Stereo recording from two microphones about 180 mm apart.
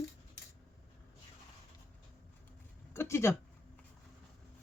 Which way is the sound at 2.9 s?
15° left (ahead or behind).